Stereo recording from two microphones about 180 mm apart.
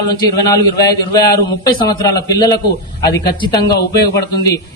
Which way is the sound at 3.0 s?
60° left (ahead or behind).